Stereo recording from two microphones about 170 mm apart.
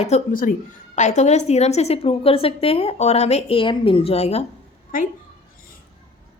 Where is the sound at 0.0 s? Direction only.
45° left (ahead or behind).